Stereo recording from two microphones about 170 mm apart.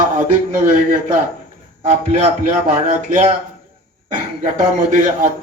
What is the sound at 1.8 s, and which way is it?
A man's voice, 45° right (ahead or behind).